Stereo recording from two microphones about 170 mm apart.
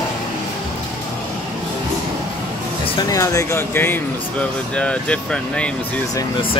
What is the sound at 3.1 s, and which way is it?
Speech, 20° left (ahead or behind).